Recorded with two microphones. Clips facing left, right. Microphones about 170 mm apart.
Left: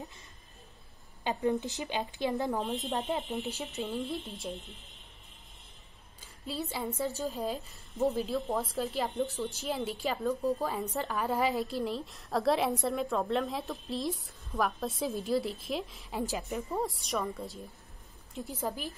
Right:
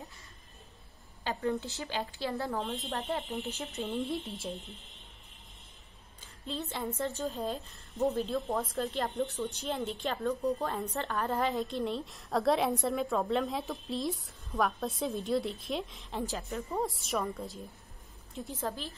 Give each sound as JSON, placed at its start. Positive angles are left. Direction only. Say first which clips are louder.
{"t": 1.2, "sound": "speech", "louder": "left 3 dB", "side_deg": 20}
{"t": 3.6, "sound": "a woman's voice", "louder": "right 1 dB", "side_deg": 0}
{"t": 6.4, "sound": "a woman's voice", "louder": "left 1 dB", "side_deg": 5}
{"t": 16.6, "sound": "a woman's voice", "louder": "even", "side_deg": 0}